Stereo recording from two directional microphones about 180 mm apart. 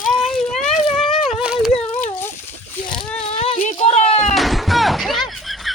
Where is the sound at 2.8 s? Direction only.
25° left (ahead or behind).